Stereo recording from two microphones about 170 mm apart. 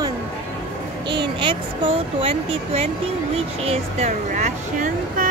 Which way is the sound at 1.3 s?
30° right (ahead or behind).